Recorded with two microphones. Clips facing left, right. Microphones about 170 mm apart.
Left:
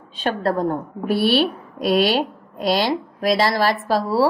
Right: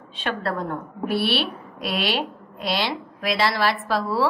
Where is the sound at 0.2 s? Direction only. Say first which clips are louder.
Left 6 dB; 40° left (ahead or behind).